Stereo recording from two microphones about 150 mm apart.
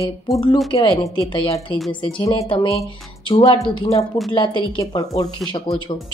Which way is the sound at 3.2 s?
35° left (ahead or behind).